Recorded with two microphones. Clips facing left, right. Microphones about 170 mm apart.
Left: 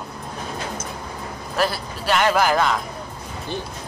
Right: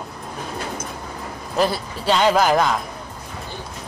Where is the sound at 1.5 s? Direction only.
20° right (ahead or behind).